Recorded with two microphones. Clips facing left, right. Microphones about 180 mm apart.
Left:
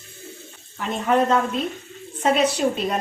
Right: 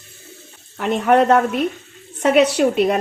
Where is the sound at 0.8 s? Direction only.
70° right (ahead or behind).